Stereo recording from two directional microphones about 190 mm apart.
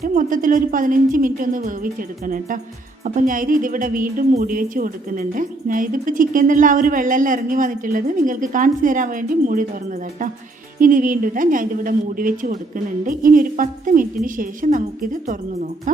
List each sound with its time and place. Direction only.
0.0 s a woman's voice: 45° right (ahead or behind)
10.8 s a woman's voice: 45° right (ahead or behind)